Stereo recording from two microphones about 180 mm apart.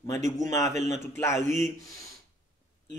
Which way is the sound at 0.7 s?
40° right (ahead or behind).